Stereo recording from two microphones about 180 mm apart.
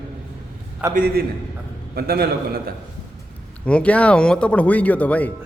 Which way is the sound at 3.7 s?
5° left (ahead or behind).